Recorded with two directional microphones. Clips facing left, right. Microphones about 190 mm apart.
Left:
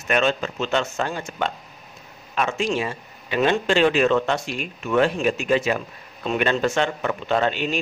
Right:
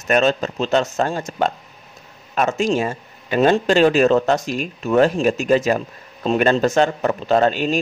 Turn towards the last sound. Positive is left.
turn(degrees=-40)  # may be behind; listen again after turning